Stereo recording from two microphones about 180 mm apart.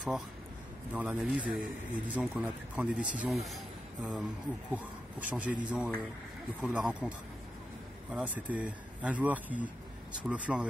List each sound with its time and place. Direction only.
0.9 s speech: 5° right (ahead or behind)